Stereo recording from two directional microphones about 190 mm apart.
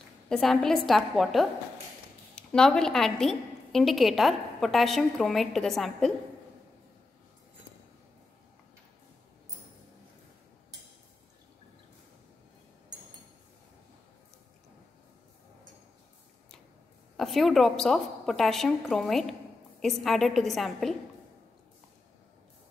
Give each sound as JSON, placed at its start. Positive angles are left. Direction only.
{"t": 0.3, "sound": "a woman's voice", "side_deg": 5}
{"t": 17.2, "sound": "a woman's voice", "side_deg": 0}